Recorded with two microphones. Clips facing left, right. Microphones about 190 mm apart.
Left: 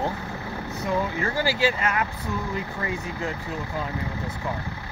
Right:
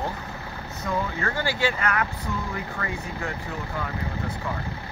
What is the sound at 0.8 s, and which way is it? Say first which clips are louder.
Speech: left 2 dB; 20° left (ahead or behind).